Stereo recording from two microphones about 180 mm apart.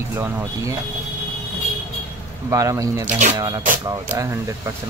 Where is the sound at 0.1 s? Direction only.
15° right (ahead or behind).